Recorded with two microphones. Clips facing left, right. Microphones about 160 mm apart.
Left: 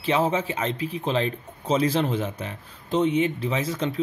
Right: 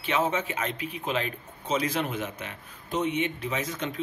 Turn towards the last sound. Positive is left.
turn(degrees=30)  # may be behind; listen again after turning